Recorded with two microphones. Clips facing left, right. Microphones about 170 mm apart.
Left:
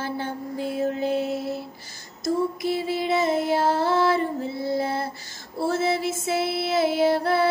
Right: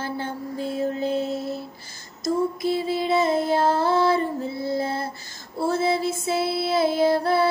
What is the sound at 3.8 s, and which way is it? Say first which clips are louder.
Female singing: right 1 dB; 15° right (ahead or behind).